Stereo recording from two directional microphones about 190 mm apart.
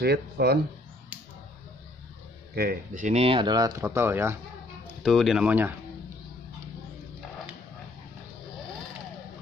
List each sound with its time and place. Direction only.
0.0 s speech: 60° right (ahead or behind)
2.5 s speech: 55° right (ahead or behind); by 4.4 s 15° right (ahead or behind)
5.0 s speech: centre (ahead or behind)